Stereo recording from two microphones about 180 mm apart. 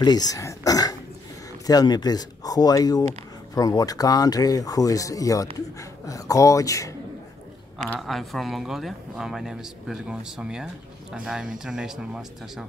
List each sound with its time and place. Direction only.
0.0 s speech: 20° left (ahead or behind)
8.0 s speech: centre (ahead or behind)